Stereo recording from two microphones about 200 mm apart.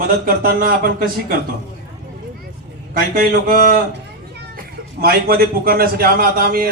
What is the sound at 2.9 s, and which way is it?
Speech, 45° right (ahead or behind).